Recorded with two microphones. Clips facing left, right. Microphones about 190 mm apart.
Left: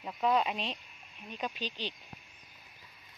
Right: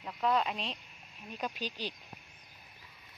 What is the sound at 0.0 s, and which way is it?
Speech, 10° left (ahead or behind).